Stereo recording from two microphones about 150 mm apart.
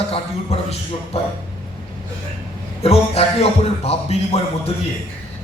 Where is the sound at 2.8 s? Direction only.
40° left (ahead or behind).